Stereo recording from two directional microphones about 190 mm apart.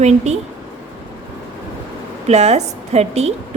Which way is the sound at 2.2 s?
35° right (ahead or behind).